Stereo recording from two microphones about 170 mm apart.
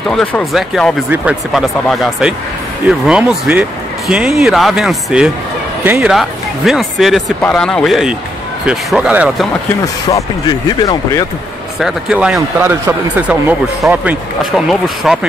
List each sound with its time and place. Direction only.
0.1 s speech: 5° left (ahead or behind); by 6.1 s 10° right (ahead or behind)
6.1 s speech: centre (ahead or behind)
10.0 s speech: 25° left (ahead or behind)
11.8 s speech: 5° right (ahead or behind)